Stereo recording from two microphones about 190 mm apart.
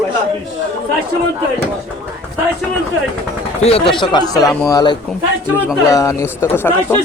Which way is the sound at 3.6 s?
30° left (ahead or behind).